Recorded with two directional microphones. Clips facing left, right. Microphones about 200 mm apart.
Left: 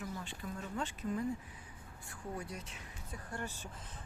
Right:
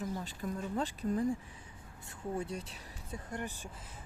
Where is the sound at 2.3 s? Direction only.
25° right (ahead or behind).